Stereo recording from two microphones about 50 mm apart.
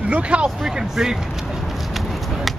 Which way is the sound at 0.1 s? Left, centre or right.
Right.